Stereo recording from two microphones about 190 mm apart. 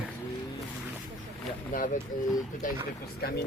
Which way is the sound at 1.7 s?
45° left (ahead or behind).